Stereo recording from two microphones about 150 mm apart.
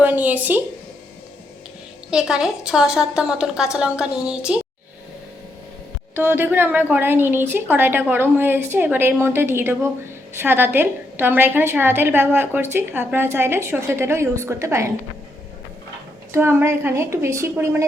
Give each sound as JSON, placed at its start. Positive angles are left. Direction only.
{"t": 0.0, "sound": "a woman's voice", "side_deg": -10}
{"t": 2.0, "sound": "a woman's voice", "side_deg": -5}
{"t": 6.1, "sound": "a woman's voice", "side_deg": -15}
{"t": 16.3, "sound": "a woman's voice", "side_deg": -15}